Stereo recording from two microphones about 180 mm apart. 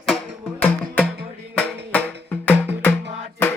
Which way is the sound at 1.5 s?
5° left (ahead or behind).